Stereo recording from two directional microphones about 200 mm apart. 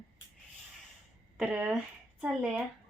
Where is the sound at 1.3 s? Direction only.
5° right (ahead or behind).